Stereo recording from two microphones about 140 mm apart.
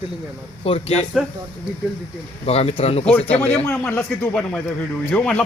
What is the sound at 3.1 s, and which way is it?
Speech, 10° left (ahead or behind).